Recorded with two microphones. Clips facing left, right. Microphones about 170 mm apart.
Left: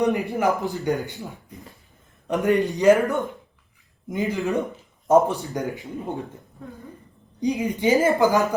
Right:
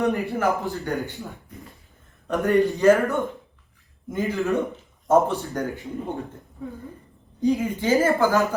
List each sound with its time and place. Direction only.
0.1 s a woman's voice: 15° left (ahead or behind)
2.2 s a woman's voice: 15° left (ahead or behind)
7.4 s a woman's voice: 20° left (ahead or behind)